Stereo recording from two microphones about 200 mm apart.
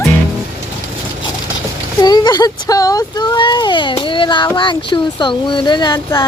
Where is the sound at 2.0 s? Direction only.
20° left (ahead or behind).